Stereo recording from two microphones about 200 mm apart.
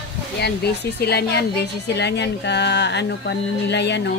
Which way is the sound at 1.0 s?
55° left (ahead or behind).